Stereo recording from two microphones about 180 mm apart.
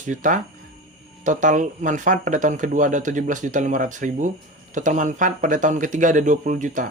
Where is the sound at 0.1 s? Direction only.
45° right (ahead or behind).